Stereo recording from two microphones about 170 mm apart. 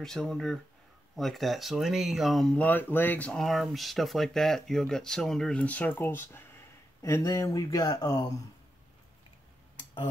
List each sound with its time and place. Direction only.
0.0 s speech: 5° left (ahead or behind); by 8.3 s 20° left (ahead or behind)